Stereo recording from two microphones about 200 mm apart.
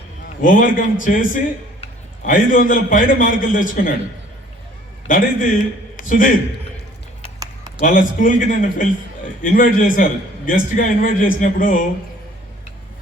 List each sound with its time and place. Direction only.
0.4 s a man's voice: 45° left (ahead or behind)
5.0 s a man's voice: 40° left (ahead or behind)
7.8 s a man's voice: 40° left (ahead or behind)